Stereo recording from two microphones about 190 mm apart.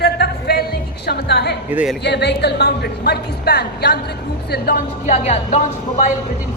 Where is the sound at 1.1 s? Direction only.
60° left (ahead or behind).